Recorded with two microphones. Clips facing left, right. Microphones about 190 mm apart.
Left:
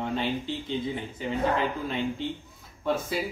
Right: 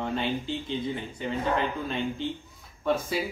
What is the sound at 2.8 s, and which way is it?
Speech, centre (ahead or behind).